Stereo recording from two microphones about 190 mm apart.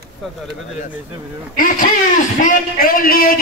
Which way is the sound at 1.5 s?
45° left (ahead or behind).